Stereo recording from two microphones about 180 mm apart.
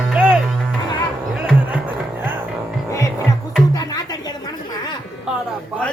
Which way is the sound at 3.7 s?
20° left (ahead or behind).